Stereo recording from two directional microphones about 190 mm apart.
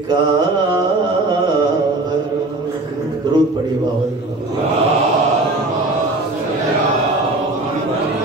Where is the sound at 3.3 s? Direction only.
20° right (ahead or behind).